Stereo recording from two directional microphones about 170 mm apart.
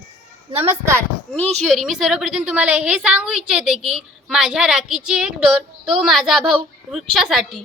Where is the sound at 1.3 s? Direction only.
5° left (ahead or behind).